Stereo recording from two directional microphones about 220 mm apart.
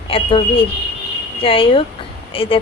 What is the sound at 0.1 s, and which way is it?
A woman's voice, 25° left (ahead or behind).